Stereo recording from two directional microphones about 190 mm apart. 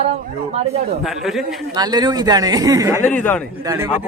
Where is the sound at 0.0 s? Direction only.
35° right (ahead or behind).